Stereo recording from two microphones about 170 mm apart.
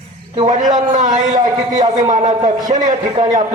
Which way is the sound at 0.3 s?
40° right (ahead or behind).